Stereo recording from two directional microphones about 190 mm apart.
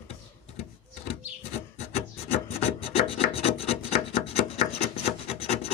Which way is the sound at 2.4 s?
30° left (ahead or behind).